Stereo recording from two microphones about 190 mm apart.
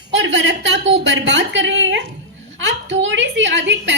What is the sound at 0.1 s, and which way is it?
A woman's voice, 70° right (ahead or behind).